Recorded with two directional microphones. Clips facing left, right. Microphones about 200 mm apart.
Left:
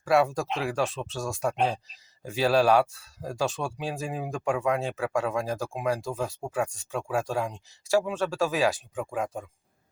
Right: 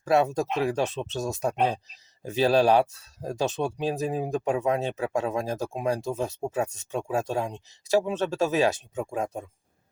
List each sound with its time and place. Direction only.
0.0 s speech: 20° right (ahead or behind)
4.1 s speech: 35° right (ahead or behind)
4.4 s speech: 20° right (ahead or behind)